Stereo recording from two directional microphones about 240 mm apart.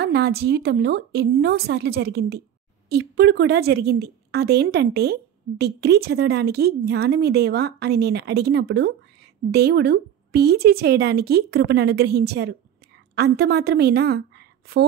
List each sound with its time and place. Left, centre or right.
0.0 s a woman's voice: right